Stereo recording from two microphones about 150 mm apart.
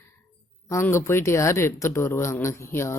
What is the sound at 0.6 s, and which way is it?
Speech, 20° left (ahead or behind).